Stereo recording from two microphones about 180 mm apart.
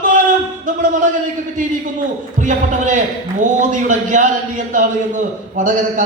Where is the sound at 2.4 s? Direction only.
45° right (ahead or behind).